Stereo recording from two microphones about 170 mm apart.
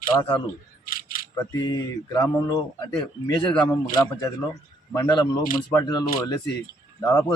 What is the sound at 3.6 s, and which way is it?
Speech, 25° left (ahead or behind).